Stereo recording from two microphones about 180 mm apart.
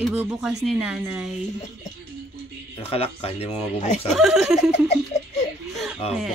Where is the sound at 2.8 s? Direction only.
35° left (ahead or behind).